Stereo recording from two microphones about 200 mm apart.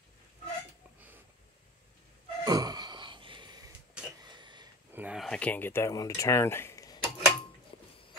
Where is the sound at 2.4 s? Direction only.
20° right (ahead or behind).